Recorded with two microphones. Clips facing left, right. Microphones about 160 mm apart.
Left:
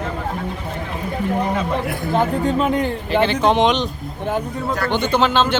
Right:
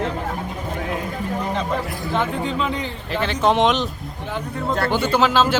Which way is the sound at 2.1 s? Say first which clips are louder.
Left 5 dB; 40° left (ahead or behind).